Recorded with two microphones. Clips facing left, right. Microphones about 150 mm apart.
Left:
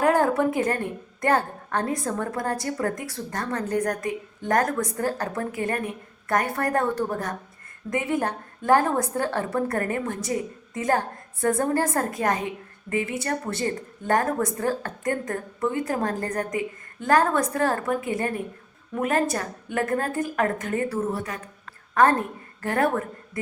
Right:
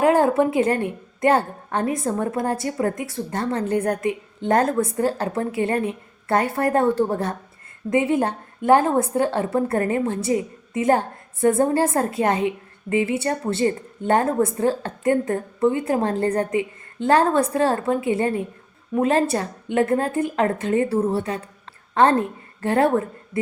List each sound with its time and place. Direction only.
0.0 s a woman's voice: 20° right (ahead or behind)